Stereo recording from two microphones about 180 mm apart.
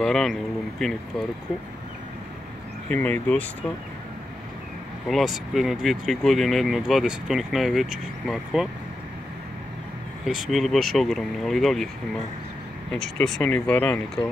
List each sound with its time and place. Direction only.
0.0 s speech: centre (ahead or behind)
2.9 s speech: 10° left (ahead or behind)
5.0 s speech: centre (ahead or behind)
10.2 s speech: centre (ahead or behind)